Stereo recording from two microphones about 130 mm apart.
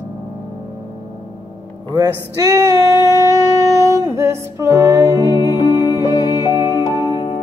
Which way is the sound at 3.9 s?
25° right (ahead or behind).